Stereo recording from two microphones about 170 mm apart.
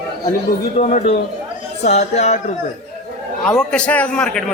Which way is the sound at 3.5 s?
5° left (ahead or behind).